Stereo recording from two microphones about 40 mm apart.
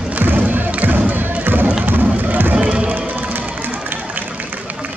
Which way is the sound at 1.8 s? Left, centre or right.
Right.